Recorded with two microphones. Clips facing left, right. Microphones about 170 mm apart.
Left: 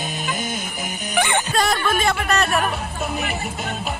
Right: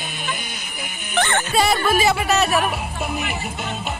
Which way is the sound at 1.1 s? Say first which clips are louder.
Even; 15° left (ahead or behind).